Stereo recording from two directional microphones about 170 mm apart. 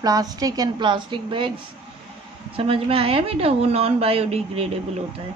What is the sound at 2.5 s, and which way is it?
Speech, 35° right (ahead or behind).